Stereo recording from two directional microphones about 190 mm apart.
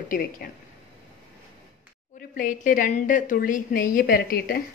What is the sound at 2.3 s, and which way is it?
A woman's voice, 45° left (ahead or behind).